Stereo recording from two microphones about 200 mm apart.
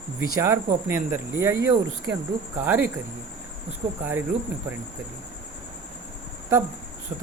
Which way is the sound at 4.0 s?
10° right (ahead or behind).